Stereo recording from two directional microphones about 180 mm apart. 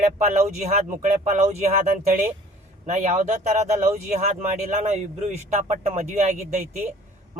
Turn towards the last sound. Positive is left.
turn(degrees=-40)  # may be behind; listen again after turning